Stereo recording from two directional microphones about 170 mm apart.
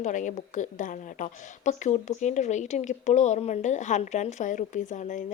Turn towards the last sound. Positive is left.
turn(degrees=45)  # may be behind; listen again after turning